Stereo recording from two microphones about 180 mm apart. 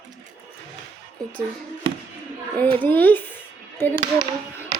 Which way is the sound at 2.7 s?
10° left (ahead or behind).